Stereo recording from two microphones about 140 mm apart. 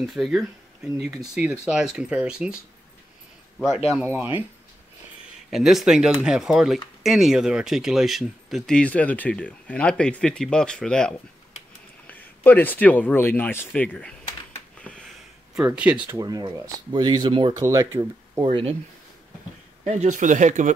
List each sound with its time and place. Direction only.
0.0 s speech: centre (ahead or behind)
5.5 s speech: centre (ahead or behind)
14.8 s a sound: 5° left (ahead or behind)
15.5 s speech: 10° right (ahead or behind)
16.2 s speech: 30° right (ahead or behind)
18.4 s speech: 40° right (ahead or behind)
19.8 s speech: 55° right (ahead or behind)